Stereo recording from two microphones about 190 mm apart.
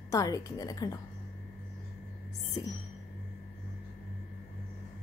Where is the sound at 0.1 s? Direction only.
15° left (ahead or behind).